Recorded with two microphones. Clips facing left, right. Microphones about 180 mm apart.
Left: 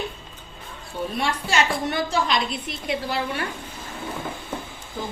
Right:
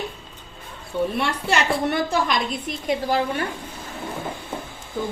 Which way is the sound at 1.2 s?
60° right (ahead or behind).